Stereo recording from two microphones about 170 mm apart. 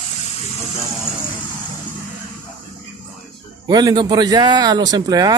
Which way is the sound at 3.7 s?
25° right (ahead or behind).